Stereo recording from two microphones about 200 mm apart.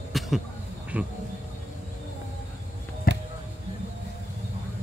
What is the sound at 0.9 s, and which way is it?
Speech, 5° right (ahead or behind).